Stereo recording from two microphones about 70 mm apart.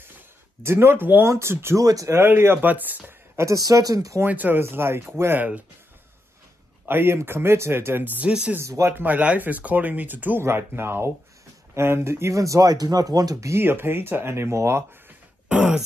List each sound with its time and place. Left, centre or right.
0.6 s speech: right
1.8 s speech: right
2.1 s speech: right
3.3 s speech: right
4.3 s speech: right
6.9 s speech: right
8.3 s speech: centre
8.5 s speech: right
8.9 s speech: right
13.5 s speech: right
15.4 s throat clearing: centre